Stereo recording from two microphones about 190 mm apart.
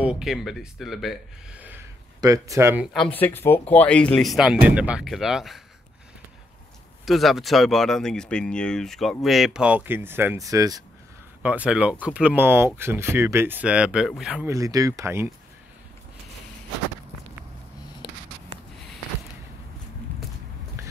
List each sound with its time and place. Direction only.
0.0 s speech: 5° right (ahead or behind)
2.2 s speech: 15° right (ahead or behind)
2.9 s speech: 5° left (ahead or behind)
7.1 s speech: centre (ahead or behind); by 10.8 s 20° right (ahead or behind)
11.4 s speech: 5° right (ahead or behind)
14.5 s speech: 15° right (ahead or behind)